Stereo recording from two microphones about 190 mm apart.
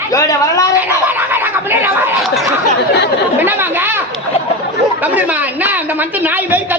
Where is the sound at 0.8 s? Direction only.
10° right (ahead or behind).